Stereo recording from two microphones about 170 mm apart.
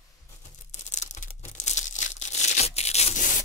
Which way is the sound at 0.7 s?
45° left (ahead or behind).